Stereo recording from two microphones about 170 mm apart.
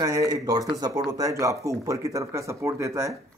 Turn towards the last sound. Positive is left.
turn(degrees=-15)  # may be behind; listen again after turning